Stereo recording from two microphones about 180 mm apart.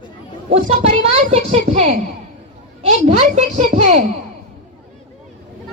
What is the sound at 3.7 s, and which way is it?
Speech, 50° right (ahead or behind).